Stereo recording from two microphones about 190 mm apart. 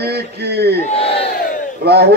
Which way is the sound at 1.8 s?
60° right (ahead or behind).